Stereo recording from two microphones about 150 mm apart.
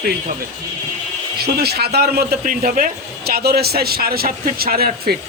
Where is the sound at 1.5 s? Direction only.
90° right.